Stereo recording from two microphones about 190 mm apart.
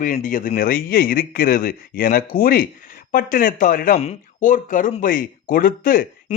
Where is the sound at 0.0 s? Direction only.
45° left (ahead or behind).